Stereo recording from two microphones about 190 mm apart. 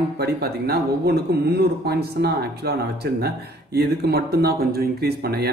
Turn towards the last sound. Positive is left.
turn(degrees=-55)  # may be behind; listen again after turning